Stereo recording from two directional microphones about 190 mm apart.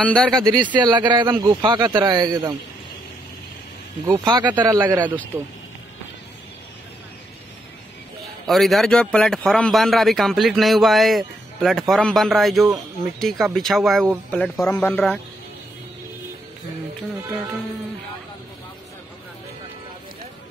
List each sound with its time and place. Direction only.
0.0 s a man's voice: 5° left (ahead or behind)
0.4 s speech: 20° right (ahead or behind)
4.0 s a man's voice: 10° right (ahead or behind)
8.5 s a man's voice: centre (ahead or behind)